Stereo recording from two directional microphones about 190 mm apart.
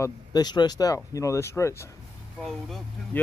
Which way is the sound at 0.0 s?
20° left (ahead or behind).